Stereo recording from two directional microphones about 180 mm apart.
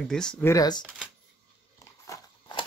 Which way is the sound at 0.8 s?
5° right (ahead or behind).